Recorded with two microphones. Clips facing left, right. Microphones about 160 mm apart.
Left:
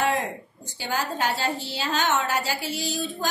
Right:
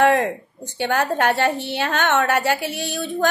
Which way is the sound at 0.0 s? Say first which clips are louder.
Right 8 dB; 65° right (ahead or behind).